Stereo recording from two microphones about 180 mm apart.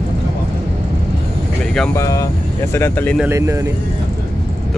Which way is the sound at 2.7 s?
10° left (ahead or behind).